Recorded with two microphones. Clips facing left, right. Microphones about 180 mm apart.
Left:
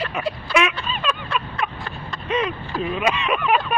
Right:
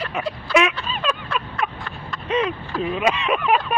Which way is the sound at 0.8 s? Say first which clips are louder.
Even; 35° right (ahead or behind).